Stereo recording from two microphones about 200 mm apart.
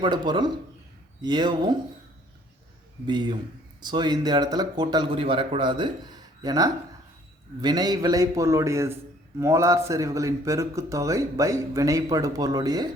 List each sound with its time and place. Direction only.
0.0 s speech: 20° right (ahead or behind)
3.1 s a man's voice: 20° right (ahead or behind)